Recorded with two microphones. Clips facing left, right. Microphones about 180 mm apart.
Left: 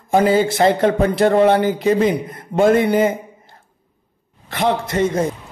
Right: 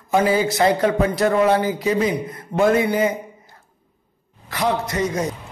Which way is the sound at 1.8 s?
50° left (ahead or behind).